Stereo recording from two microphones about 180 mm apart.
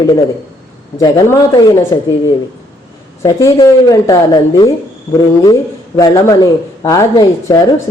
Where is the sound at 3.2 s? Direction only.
15° left (ahead or behind).